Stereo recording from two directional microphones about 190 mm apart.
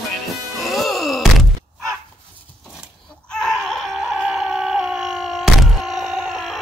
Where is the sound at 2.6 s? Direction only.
5° right (ahead or behind).